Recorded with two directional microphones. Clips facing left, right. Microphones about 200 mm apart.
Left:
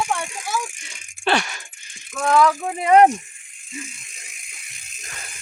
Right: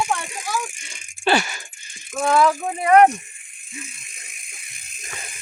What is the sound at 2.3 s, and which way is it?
Speech, 5° right (ahead or behind).